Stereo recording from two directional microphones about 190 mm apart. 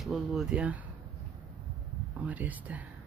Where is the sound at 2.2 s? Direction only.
10° right (ahead or behind).